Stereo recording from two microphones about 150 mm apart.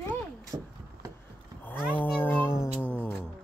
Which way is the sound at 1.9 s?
10° left (ahead or behind).